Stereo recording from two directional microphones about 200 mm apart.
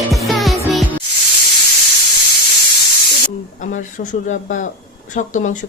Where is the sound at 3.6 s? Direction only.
40° left (ahead or behind).